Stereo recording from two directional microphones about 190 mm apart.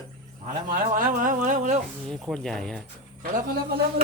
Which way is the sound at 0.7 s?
45° right (ahead or behind).